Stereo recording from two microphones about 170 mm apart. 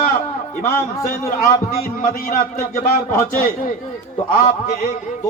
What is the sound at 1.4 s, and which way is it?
A man's voice, 55° left (ahead or behind).